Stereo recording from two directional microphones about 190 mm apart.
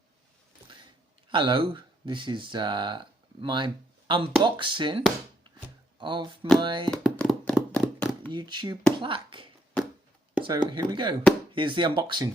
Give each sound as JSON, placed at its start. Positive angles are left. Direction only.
{"t": 1.3, "sound": "speech", "side_deg": -25}
{"t": 6.9, "sound": "a sound", "side_deg": 5}
{"t": 8.3, "sound": "speech", "side_deg": -25}